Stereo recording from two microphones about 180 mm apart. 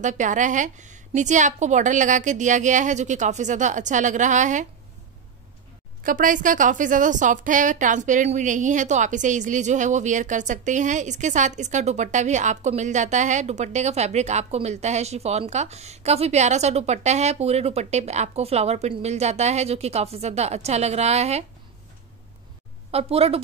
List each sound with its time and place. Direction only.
0.0 s a woman's voice: 45° right (ahead or behind)
6.0 s a woman's voice: 50° right (ahead or behind)
22.8 s a woman's voice: 35° right (ahead or behind)